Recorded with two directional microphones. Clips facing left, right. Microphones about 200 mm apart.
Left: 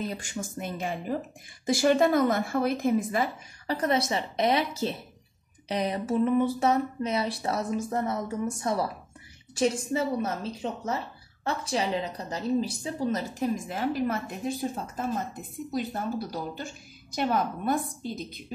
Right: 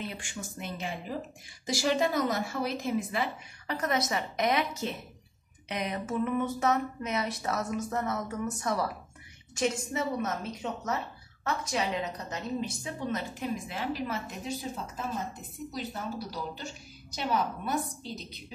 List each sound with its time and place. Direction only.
0.0 s a woman's voice: 40° left (ahead or behind)